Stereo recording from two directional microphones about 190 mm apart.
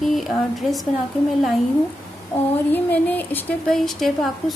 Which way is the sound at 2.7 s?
10° left (ahead or behind).